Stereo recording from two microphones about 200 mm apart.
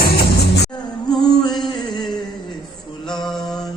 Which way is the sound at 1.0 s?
5° left (ahead or behind).